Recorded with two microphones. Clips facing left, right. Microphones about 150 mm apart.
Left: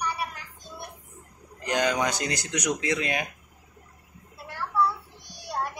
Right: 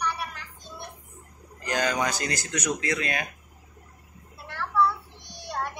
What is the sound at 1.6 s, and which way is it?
Speech, 20° left (ahead or behind).